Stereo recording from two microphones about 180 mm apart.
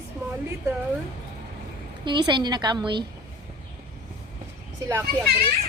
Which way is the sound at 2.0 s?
25° right (ahead or behind).